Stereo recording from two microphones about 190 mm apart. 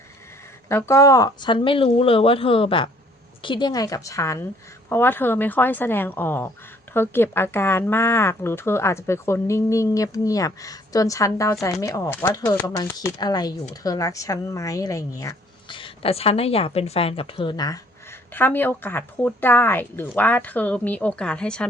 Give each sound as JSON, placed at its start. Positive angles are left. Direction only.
{"t": 0.7, "sound": "speech", "side_deg": 15}
{"t": 18.3, "sound": "speech", "side_deg": 10}